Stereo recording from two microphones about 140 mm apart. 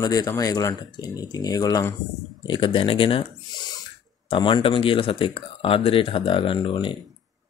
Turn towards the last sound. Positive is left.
turn(degrees=35)  # may be behind; listen again after turning